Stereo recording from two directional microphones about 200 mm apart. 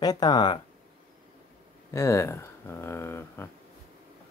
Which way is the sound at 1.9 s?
15° left (ahead or behind).